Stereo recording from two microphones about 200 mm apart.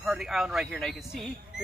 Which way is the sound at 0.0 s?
Centre (ahead or behind).